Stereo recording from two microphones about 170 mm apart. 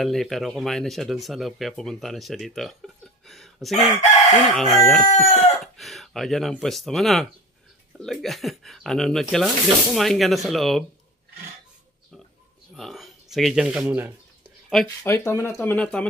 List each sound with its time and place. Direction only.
0.0 s speech: centre (ahead or behind)
4.0 s chicken: 40° left (ahead or behind)
4.4 s speech: centre (ahead or behind)
5.3 s chicken: 40° left (ahead or behind)
5.6 s speech: centre (ahead or behind)
12.7 s speech: centre (ahead or behind)
15.0 s speech: 15° left (ahead or behind)